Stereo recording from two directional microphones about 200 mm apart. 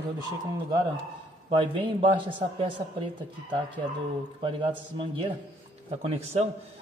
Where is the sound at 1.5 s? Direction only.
25° right (ahead or behind).